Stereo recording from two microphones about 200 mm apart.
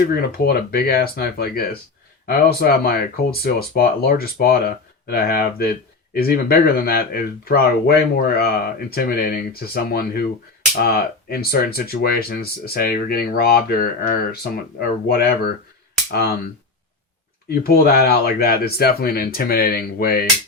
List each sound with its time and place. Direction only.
0.3 s speech: 50° left (ahead or behind)
17.5 s speech: 50° left (ahead or behind)